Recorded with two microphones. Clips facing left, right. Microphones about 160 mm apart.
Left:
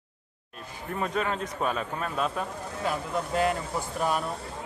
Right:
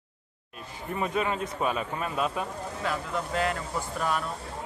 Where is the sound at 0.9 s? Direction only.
5° right (ahead or behind).